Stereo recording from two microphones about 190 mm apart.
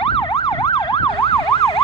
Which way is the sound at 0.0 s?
25° left (ahead or behind).